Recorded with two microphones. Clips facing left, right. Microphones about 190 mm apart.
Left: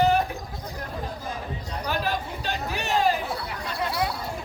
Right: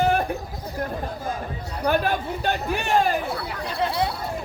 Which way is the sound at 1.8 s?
55° right (ahead or behind).